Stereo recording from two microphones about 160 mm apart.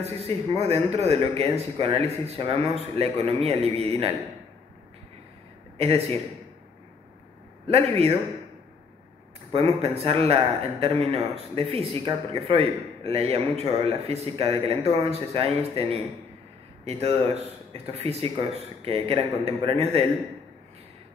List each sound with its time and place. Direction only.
0.0 s speech: 40° right (ahead or behind)
5.8 s speech: 40° right (ahead or behind)
7.6 s speech: 40° right (ahead or behind)
9.5 s speech: 40° right (ahead or behind)